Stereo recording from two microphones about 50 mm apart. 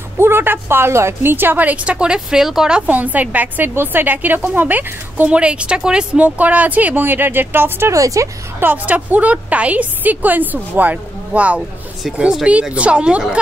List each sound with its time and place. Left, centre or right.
0.2 s a woman's voice: right
1.2 s speech: right; by 2.8 s centre
2.9 s a woman's voice: right
5.3 s speech: right
6.2 s a woman's voice: right
7.9 s a woman's voice: right
8.8 s a woman's voice: right
12.7 s speech: right